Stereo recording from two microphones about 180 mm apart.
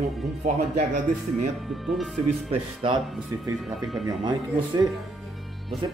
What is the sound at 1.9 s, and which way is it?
Speech, centre (ahead or behind).